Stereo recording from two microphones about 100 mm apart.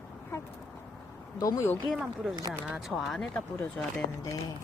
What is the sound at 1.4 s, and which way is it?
Speech, 30° left (ahead or behind).